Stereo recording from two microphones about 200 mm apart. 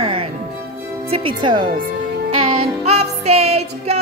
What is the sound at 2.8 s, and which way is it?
Music, 35° right (ahead or behind).